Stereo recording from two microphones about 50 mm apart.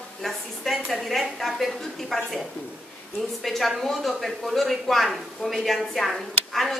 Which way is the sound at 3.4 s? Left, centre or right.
Centre.